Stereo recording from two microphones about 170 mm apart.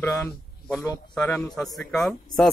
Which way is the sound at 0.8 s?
25° left (ahead or behind).